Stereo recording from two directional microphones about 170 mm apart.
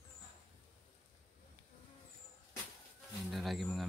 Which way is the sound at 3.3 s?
Centre (ahead or behind).